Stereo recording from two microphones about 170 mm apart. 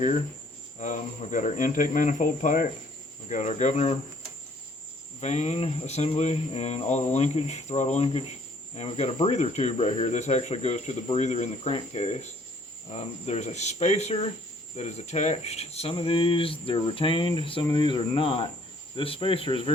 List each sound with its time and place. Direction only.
0.8 s speech: 45° left (ahead or behind)
5.2 s speech: 40° left (ahead or behind)